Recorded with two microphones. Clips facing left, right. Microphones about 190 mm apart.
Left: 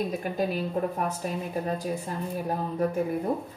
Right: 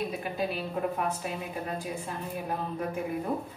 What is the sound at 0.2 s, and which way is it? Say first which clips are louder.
A woman's voice: left 4 dB; 40° left (ahead or behind).